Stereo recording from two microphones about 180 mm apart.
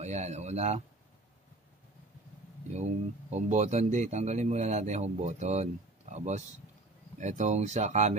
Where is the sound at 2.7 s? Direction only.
40° right (ahead or behind).